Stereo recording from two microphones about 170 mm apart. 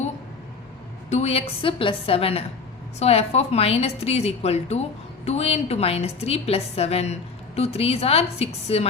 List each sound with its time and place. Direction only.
1.1 s a woman's voice: 40° left (ahead or behind)